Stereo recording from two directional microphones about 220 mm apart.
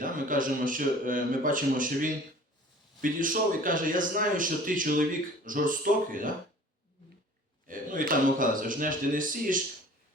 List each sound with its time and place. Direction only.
0.0 s speech: 40° right (ahead or behind)
7.7 s speech: 40° right (ahead or behind)